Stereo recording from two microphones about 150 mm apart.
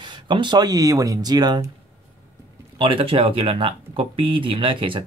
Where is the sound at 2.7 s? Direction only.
35° right (ahead or behind).